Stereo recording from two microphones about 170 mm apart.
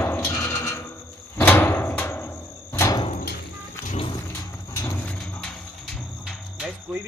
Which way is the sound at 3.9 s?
35° left (ahead or behind).